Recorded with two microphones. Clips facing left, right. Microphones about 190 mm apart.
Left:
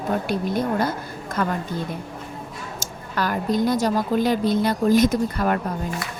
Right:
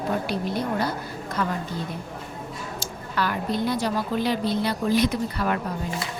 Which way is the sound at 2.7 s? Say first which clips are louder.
Left 1 dB; 45° left (ahead or behind).